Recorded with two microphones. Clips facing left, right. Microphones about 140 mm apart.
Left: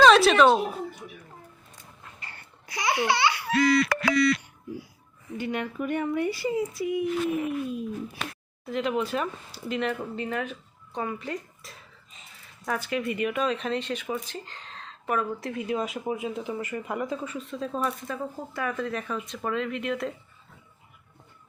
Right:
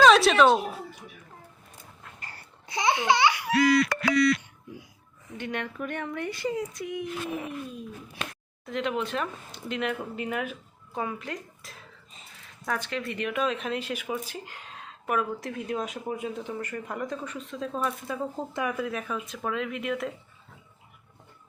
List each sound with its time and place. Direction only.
0.0 s speech: centre (ahead or behind)
2.6 s speech: 20° right (ahead or behind)
3.9 s a sound: 80° left
5.4 s speech: 5° left (ahead or behind)
18.1 s speech: 20° right (ahead or behind); by 20.1 s centre (ahead or behind)